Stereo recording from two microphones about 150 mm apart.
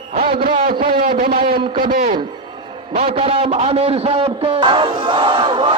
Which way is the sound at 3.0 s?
40° right (ahead or behind).